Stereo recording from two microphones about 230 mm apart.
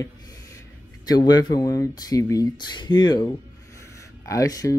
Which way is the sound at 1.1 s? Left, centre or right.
Centre.